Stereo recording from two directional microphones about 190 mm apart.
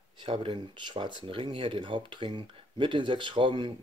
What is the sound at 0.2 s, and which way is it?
Speech, 25° right (ahead or behind).